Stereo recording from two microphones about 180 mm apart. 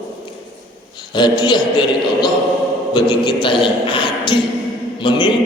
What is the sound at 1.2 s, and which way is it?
A man's voice, 25° left (ahead or behind).